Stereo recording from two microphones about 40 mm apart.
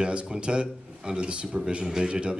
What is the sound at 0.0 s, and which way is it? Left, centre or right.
A man's voice, right.